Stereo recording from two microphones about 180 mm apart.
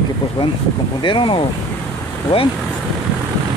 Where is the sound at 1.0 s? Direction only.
25° left (ahead or behind).